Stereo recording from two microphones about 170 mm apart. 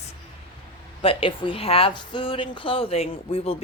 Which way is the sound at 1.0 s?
35° left (ahead or behind).